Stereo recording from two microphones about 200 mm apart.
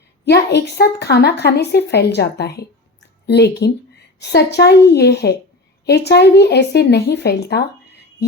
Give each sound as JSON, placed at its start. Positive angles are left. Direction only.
{"t": 0.3, "sound": "speech", "side_deg": 55}